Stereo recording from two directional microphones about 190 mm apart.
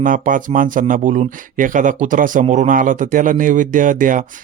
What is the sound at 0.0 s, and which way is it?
Speech, 45° right (ahead or behind).